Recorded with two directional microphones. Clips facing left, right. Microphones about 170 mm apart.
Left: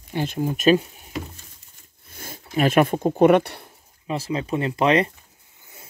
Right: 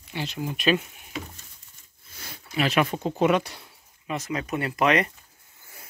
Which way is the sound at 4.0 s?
30° left (ahead or behind).